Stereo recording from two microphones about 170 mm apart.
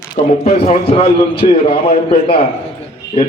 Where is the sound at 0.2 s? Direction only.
45° left (ahead or behind).